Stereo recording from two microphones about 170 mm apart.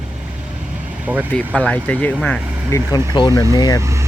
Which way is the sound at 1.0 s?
10° right (ahead or behind).